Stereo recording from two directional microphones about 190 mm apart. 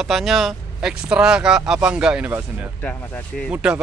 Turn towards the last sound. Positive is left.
turn(degrees=-5)  # may be behind; listen again after turning